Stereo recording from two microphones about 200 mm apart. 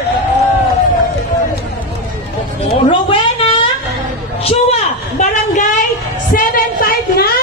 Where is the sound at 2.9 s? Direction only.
25° left (ahead or behind); by 7.2 s 45° left (ahead or behind).